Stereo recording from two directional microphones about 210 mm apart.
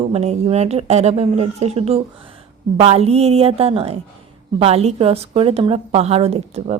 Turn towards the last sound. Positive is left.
turn(degrees=-30)  # may be behind; listen again after turning